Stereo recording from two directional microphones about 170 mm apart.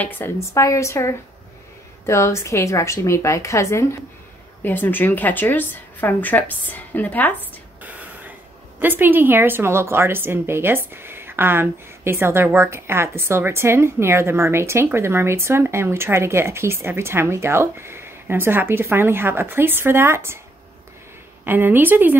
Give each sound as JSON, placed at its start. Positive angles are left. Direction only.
{"t": 0.0, "sound": "a woman's voice", "side_deg": 10}
{"t": 7.8, "sound": "speech", "side_deg": -10}
{"t": 21.5, "sound": "speech", "side_deg": -10}